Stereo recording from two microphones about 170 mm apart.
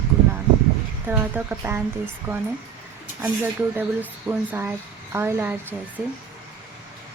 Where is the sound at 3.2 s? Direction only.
10° right (ahead or behind).